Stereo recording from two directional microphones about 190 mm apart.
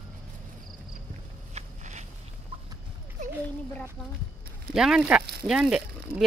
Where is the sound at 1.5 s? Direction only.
35° right (ahead or behind).